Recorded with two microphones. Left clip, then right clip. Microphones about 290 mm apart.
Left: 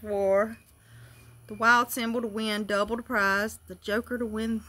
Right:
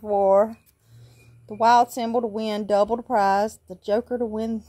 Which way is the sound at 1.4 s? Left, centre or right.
Centre.